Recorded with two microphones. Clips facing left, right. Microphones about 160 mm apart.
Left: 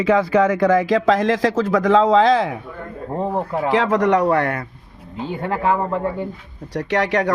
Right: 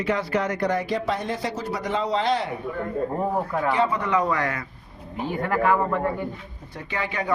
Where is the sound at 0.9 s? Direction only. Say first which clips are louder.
Left 9 dB; 90° left.